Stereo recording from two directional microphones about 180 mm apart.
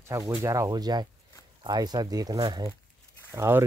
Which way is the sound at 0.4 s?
20° right (ahead or behind).